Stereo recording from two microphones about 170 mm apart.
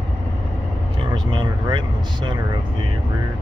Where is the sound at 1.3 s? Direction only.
25° right (ahead or behind).